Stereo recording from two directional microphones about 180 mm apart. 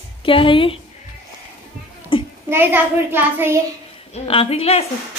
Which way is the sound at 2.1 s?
30° left (ahead or behind).